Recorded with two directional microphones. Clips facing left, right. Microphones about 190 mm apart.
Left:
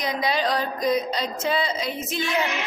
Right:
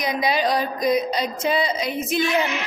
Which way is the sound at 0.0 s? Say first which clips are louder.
Right 2 dB; 10° right (ahead or behind).